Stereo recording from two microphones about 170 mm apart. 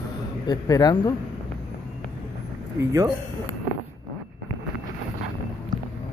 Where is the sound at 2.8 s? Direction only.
20° right (ahead or behind).